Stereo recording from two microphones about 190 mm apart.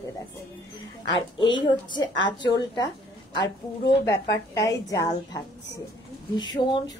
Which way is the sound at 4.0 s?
15° left (ahead or behind).